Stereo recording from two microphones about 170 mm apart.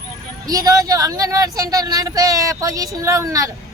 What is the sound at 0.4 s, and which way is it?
A woman's voice, 20° right (ahead or behind).